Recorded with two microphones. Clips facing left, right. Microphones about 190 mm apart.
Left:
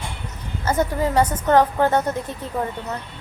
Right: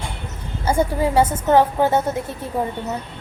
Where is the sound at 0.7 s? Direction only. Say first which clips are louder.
Right 2 dB; 10° right (ahead or behind).